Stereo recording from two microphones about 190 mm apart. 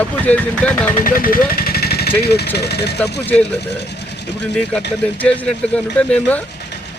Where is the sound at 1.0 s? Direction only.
50° left (ahead or behind).